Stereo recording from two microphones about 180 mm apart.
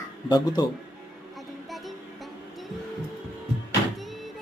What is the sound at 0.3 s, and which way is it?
Speech, 20° left (ahead or behind).